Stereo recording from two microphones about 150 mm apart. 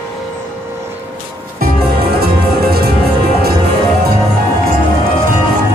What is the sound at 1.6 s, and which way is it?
Music, 90° right.